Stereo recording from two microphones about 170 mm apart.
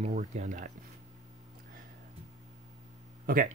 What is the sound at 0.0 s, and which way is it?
Speech, 45° right (ahead or behind).